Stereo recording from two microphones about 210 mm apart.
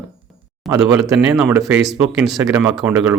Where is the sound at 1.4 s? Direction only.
10° right (ahead or behind).